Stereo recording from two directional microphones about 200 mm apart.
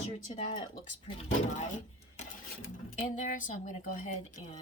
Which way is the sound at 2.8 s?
40° left (ahead or behind).